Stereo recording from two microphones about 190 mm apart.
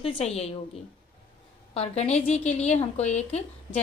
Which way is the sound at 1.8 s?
35° left (ahead or behind).